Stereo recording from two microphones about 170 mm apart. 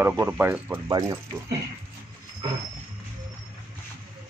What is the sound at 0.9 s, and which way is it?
Speech, 25° right (ahead or behind).